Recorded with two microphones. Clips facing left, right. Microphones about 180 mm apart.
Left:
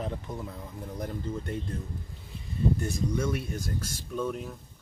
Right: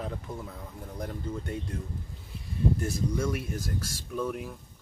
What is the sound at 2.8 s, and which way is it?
Speech, 5° right (ahead or behind).